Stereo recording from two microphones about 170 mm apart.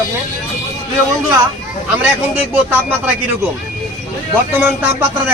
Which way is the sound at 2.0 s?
10° right (ahead or behind).